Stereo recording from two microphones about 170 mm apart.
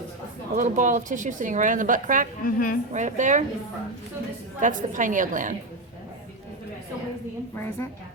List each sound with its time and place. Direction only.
0.5 s a woman's voice: 50° right (ahead or behind)
2.4 s a woman's voice: 55° left (ahead or behind)
2.9 s a woman's voice: 45° right (ahead or behind)
4.6 s a woman's voice: 50° right (ahead or behind)
7.5 s a woman's voice: 15° left (ahead or behind)